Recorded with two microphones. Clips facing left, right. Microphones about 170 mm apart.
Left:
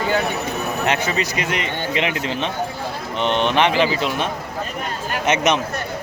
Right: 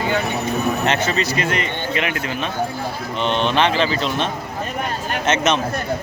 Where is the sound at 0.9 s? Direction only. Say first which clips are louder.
Right 1 dB; 10° left (ahead or behind).